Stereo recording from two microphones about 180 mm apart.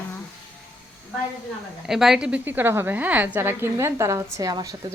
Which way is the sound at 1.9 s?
Centre (ahead or behind).